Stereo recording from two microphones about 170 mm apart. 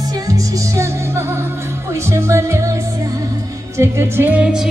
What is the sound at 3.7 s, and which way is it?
Speech, 15° right (ahead or behind).